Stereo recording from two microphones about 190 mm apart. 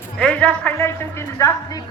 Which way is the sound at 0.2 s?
5° left (ahead or behind).